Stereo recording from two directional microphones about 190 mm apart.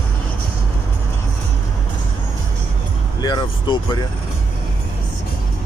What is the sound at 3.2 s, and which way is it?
Vehicle, 20° left (ahead or behind).